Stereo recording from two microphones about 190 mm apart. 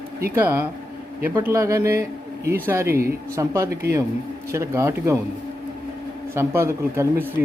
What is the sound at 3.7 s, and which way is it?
Speech, 55° right (ahead or behind).